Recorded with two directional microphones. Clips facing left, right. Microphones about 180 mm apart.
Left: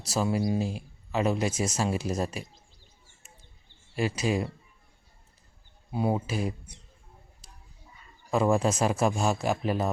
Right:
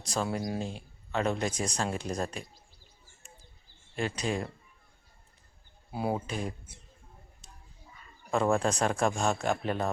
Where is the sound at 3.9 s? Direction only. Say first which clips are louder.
Left 4 dB; 5° left (ahead or behind).